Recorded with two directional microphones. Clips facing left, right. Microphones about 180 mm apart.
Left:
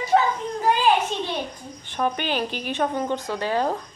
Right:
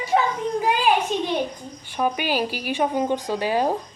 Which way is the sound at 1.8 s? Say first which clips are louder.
Right 1 dB; 10° right (ahead or behind).